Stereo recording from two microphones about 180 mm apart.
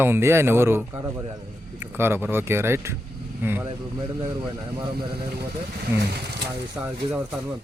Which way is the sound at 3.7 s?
30° right (ahead or behind).